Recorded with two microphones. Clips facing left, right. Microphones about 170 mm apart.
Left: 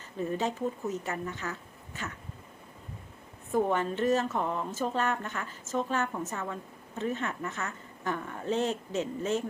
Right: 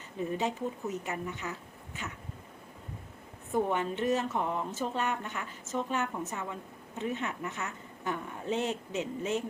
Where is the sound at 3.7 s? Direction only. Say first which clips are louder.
Left 2 dB; 15° right (ahead or behind).